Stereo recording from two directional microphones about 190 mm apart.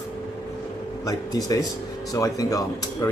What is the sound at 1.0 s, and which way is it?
A man's voice, 20° left (ahead or behind).